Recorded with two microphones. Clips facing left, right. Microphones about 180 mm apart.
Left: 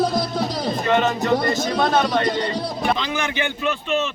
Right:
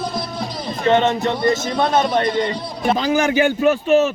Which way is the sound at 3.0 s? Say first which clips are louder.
Right 8 dB; 40° right (ahead or behind).